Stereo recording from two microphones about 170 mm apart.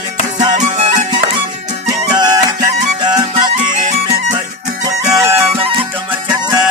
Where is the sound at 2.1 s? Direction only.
25° right (ahead or behind).